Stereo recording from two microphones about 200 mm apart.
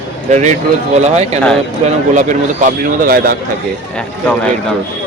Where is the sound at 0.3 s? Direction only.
35° right (ahead or behind).